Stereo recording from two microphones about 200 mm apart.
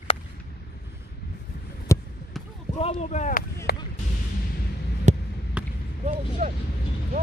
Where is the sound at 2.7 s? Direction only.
30° left (ahead or behind).